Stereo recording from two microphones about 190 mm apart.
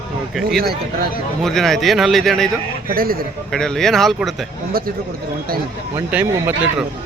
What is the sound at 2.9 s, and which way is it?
Speech, 50° right (ahead or behind).